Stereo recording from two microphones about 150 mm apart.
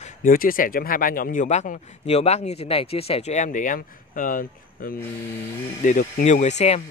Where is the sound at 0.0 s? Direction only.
65° left (ahead or behind).